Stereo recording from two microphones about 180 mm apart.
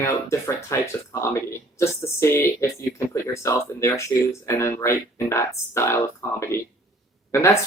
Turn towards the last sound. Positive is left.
turn(degrees=15)  # may be behind; listen again after turning